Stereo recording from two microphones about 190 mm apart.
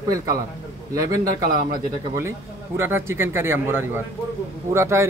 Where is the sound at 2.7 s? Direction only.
10° right (ahead or behind).